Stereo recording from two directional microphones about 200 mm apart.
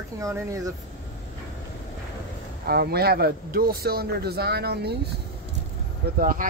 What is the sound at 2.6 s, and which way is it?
Speech, 50° right (ahead or behind).